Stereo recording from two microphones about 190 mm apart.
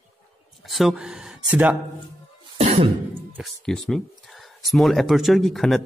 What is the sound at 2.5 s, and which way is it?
Throat clearing, 30° right (ahead or behind).